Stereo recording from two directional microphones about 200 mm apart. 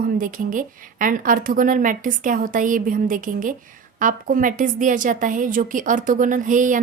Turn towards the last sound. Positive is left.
turn(degrees=-40)  # may be behind; listen again after turning